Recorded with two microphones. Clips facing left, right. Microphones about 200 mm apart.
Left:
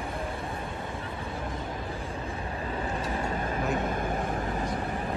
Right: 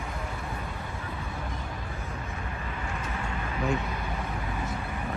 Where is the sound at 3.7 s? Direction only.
50° left (ahead or behind).